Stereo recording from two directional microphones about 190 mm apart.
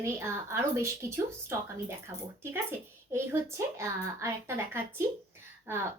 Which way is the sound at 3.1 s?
15° right (ahead or behind).